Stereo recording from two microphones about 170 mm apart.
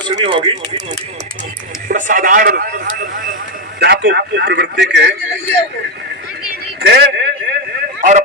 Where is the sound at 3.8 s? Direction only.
75° right (ahead or behind).